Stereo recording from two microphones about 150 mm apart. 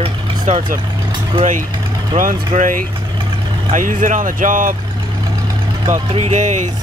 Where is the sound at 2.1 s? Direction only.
60° right (ahead or behind).